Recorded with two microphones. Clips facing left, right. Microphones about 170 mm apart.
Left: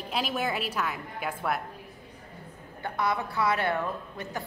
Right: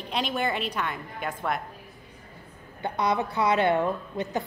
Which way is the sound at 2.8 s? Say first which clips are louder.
Right 3 dB; 20° right (ahead or behind).